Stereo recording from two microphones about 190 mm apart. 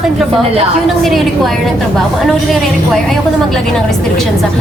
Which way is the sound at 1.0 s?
Centre (ahead or behind).